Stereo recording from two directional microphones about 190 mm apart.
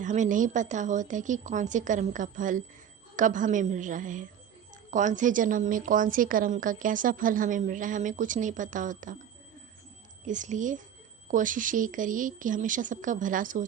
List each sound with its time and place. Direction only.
0.0 s speech: 40° right (ahead or behind)
10.2 s speech: 40° right (ahead or behind)